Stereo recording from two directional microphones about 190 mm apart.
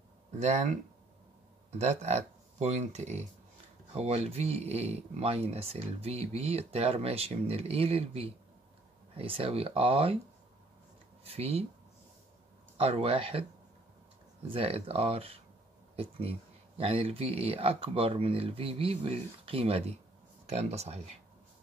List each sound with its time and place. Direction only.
0.4 s speech: 40° right (ahead or behind)
11.2 s speech: 30° right (ahead or behind)
12.7 s speech: 30° right (ahead or behind)
14.5 s speech: 30° right (ahead or behind)